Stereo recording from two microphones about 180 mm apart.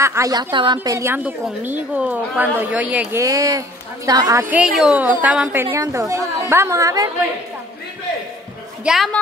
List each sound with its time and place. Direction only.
0.0 s a woman's voice: 15° right (ahead or behind)
8.8 s a woman's voice: centre (ahead or behind)